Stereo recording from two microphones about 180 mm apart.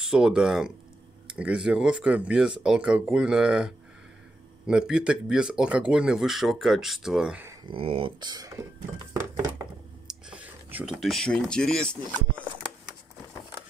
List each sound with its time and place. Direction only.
0.0 s speech: 5° right (ahead or behind)
7.6 s speech: 30° right (ahead or behind)
10.0 s speech: 5° right (ahead or behind)